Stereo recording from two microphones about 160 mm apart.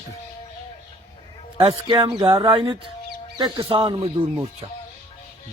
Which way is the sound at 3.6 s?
35° right (ahead or behind).